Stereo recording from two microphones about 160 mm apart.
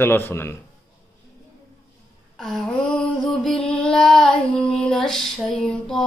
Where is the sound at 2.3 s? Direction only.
5° left (ahead or behind).